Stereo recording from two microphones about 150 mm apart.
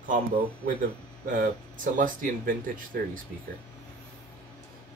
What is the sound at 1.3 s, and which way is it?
Speech, 65° right (ahead or behind).